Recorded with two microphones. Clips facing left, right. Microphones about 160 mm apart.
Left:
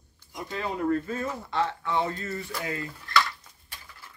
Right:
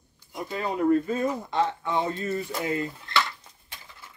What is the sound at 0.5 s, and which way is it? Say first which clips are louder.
Speech: right 4 dB; 10° right (ahead or behind).